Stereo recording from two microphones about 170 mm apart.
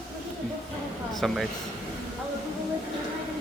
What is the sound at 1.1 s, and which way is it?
Mantra, centre (ahead or behind).